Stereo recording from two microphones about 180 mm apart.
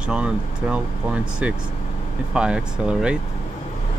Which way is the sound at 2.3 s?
5° right (ahead or behind).